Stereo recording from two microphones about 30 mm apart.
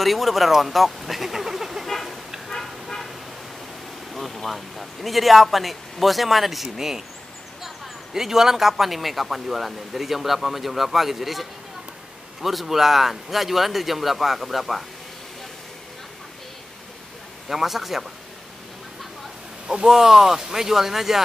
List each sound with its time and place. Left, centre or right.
0.0 s speech: centre
1.9 s vehicle: centre
4.1 s speech: centre
17.5 s speech: centre
19.9 s speech: centre